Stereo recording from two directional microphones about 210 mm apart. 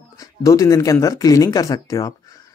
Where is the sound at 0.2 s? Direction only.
15° left (ahead or behind).